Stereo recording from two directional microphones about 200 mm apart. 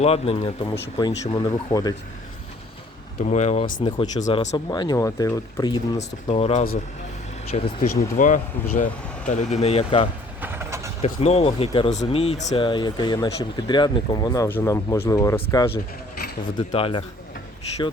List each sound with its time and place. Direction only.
0.0 s speech: 30° left (ahead or behind)
3.2 s speech: 35° left (ahead or behind)
3.8 s speech: 25° left (ahead or behind)
6.0 s speech: 35° left (ahead or behind)
10.4 s vehicle: 10° right (ahead or behind)
11.0 s speech: 30° left (ahead or behind)